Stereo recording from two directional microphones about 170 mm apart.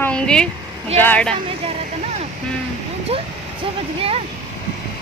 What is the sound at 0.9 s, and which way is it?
Speech, 10° left (ahead or behind).